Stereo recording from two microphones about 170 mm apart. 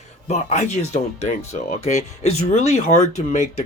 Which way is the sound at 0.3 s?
40° left (ahead or behind).